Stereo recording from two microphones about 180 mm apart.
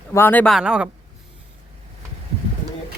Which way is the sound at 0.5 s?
5° right (ahead or behind).